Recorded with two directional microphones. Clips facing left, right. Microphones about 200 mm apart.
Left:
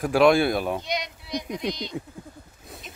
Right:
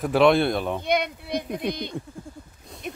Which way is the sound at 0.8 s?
55° right (ahead or behind).